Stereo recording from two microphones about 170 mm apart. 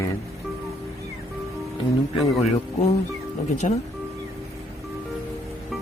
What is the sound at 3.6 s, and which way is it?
Speech, 35° left (ahead or behind).